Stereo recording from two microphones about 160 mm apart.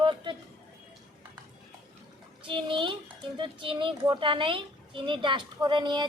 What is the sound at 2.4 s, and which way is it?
Speech, 30° right (ahead or behind).